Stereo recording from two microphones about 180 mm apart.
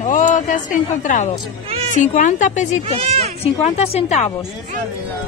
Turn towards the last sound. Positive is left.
turn(degrees=35)  # may be behind; listen again after turning